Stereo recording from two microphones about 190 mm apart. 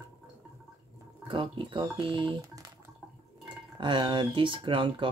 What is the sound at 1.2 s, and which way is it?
Speech, 25° right (ahead or behind).